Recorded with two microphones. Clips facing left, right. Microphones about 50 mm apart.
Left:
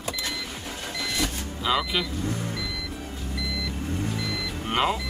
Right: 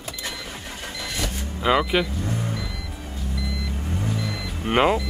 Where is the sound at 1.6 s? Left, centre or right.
Right.